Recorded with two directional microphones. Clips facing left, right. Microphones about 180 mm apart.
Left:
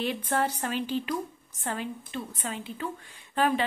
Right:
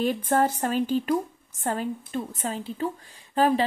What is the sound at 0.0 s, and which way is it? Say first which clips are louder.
A woman's voice: right 5 dB; 45° right (ahead or behind).